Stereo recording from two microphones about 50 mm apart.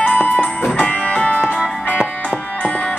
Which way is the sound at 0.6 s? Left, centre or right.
Centre.